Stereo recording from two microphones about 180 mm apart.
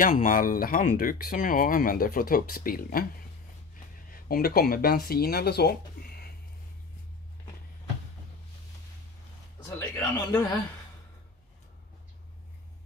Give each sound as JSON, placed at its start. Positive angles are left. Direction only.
{"t": 0.0, "sound": "speech", "side_deg": 50}
{"t": 4.1, "sound": "speech", "side_deg": 55}
{"t": 9.7, "sound": "a sound", "side_deg": 10}